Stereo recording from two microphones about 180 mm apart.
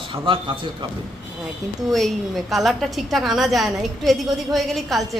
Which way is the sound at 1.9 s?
Centre (ahead or behind).